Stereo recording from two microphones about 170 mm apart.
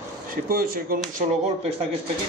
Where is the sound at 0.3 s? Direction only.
60° right (ahead or behind).